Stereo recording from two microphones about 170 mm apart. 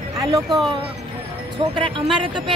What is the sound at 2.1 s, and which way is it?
Speech, 30° right (ahead or behind).